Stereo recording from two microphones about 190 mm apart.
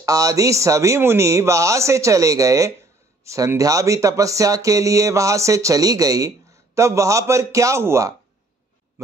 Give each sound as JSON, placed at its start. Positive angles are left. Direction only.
{"t": 0.0, "sound": "speech", "side_deg": -20}